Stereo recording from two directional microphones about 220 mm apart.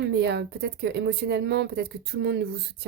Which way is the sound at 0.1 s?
50° right (ahead or behind).